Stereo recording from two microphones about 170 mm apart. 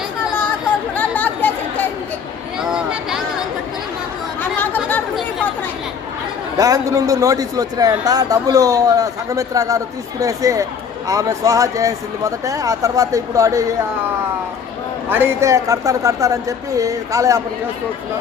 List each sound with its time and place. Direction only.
0.9 s chatter: 10° left (ahead or behind)
2.6 s a sound: 5° right (ahead or behind)
4.5 s chatter: 10° left (ahead or behind)
6.6 s a man's voice: 20° right (ahead or behind)
15.1 s a man's voice: 15° right (ahead or behind)